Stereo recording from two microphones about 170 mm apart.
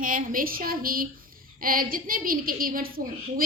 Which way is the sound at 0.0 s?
55° right (ahead or behind).